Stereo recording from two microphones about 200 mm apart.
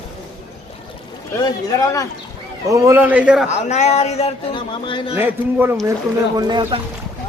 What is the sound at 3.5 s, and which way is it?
A man's voice, 35° left (ahead or behind).